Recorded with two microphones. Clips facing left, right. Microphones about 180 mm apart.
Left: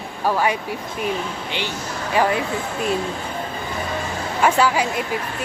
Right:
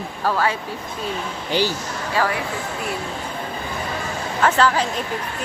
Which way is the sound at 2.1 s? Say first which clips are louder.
Left 3 dB; 20° left (ahead or behind).